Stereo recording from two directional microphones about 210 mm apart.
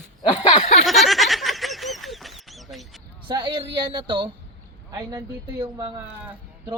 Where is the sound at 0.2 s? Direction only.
20° left (ahead or behind).